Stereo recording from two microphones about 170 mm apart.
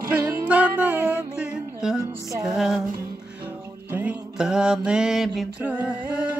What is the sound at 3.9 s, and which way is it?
Mantra, 10° right (ahead or behind).